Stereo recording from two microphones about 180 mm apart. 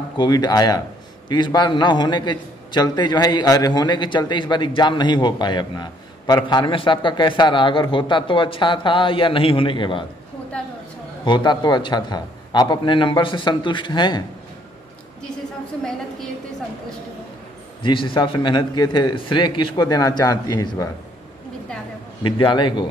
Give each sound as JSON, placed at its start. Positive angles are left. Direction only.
{"t": 0.2, "sound": "a man's voice", "side_deg": 25}
{"t": 11.2, "sound": "a man's voice", "side_deg": 25}
{"t": 17.8, "sound": "a man's voice", "side_deg": 25}
{"t": 22.2, "sound": "a man's voice", "side_deg": 25}